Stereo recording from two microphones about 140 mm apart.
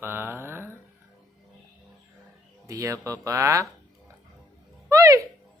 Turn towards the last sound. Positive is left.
turn(degrees=-20)  # may be behind; listen again after turning